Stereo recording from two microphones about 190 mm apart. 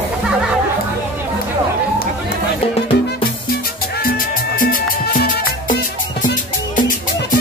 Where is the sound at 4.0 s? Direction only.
50° left (ahead or behind).